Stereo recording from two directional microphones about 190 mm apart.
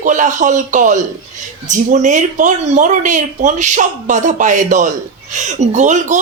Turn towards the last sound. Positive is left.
turn(degrees=-40)  # may be behind; listen again after turning